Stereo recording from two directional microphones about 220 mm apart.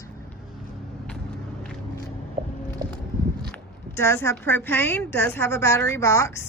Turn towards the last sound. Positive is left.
turn(degrees=10)  # may be behind; listen again after turning